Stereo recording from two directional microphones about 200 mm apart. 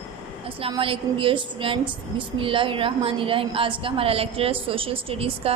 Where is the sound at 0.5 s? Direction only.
25° right (ahead or behind).